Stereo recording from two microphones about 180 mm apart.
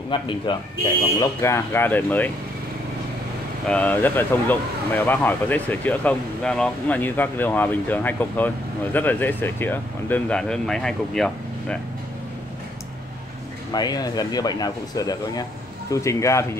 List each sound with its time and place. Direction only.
0.1 s speech: 25° left (ahead or behind)
1.2 s speech: 15° left (ahead or behind)
3.6 s speech: 5° left (ahead or behind)
13.7 s speech: 20° left (ahead or behind)